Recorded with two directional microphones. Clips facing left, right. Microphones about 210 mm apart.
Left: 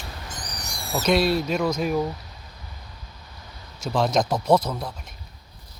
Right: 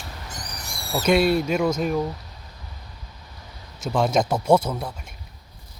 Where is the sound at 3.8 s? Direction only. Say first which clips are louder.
Right 1 dB; 5° right (ahead or behind).